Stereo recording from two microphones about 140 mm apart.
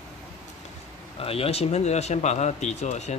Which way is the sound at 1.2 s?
45° left (ahead or behind).